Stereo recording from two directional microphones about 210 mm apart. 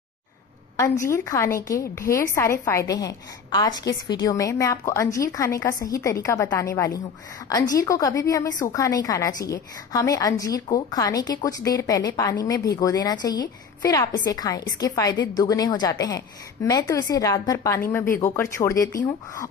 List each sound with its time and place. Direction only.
0.7 s a woman's voice: 15° left (ahead or behind)